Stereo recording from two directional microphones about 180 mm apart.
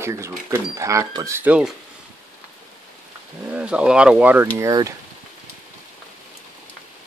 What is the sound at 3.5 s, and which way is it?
Speech, 5° right (ahead or behind).